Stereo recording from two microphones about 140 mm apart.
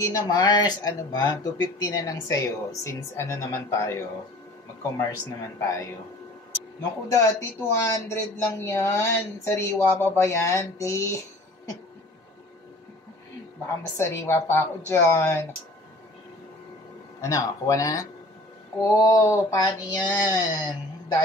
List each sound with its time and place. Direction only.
0.0 s speech: 25° left (ahead or behind)
6.8 s speech: 20° left (ahead or behind)
13.9 s speech: 20° left (ahead or behind)
17.2 s speech: 25° left (ahead or behind)